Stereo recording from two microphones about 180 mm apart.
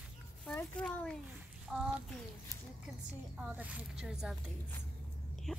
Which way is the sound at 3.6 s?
5° right (ahead or behind).